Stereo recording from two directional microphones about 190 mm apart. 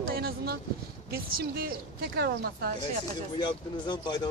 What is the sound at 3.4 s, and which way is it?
Speech, 25° left (ahead or behind).